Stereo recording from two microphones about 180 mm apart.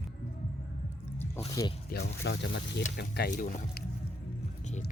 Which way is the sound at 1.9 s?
65° left (ahead or behind).